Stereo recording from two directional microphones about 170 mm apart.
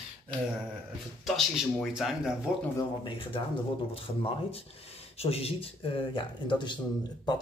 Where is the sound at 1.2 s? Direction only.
Centre (ahead or behind).